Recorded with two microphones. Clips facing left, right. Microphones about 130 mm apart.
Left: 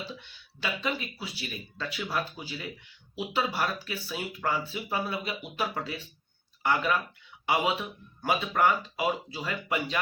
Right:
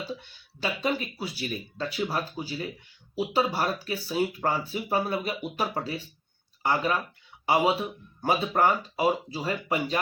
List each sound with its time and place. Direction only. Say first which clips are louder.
0.2 s speech: right 4 dB; 40° right (ahead or behind)